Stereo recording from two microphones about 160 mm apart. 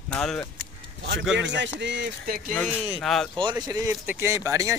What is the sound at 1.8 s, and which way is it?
Speech, 90° right.